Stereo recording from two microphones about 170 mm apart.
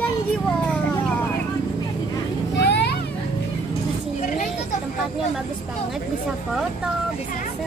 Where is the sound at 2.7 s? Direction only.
90° left.